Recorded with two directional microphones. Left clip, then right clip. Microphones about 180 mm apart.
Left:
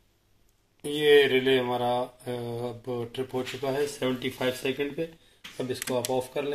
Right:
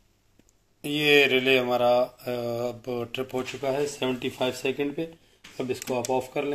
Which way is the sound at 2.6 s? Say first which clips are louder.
Right 3 dB; 25° right (ahead or behind).